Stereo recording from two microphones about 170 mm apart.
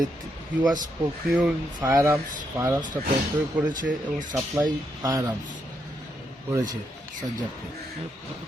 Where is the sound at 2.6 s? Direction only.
15° right (ahead or behind).